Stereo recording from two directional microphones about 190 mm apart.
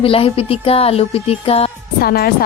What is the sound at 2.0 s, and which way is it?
Speech, 50° left (ahead or behind).